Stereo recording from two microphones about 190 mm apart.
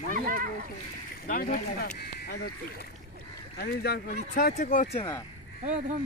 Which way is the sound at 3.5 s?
55° left (ahead or behind).